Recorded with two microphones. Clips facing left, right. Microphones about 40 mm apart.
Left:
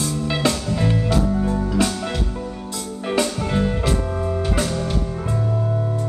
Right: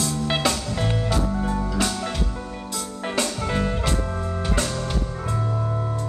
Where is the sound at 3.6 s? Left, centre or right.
Centre.